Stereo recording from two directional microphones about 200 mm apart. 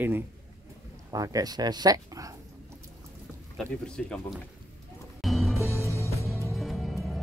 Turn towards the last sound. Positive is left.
turn(degrees=0)  # may be behind; listen again after turning